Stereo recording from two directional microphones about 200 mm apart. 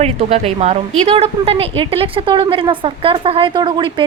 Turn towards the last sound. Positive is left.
turn(degrees=-25)  # may be behind; listen again after turning